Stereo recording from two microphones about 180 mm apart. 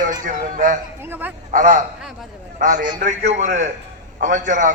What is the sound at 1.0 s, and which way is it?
Speech, 10° right (ahead or behind).